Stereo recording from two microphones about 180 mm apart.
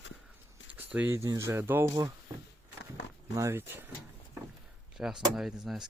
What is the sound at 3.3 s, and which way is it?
Speech, 15° right (ahead or behind).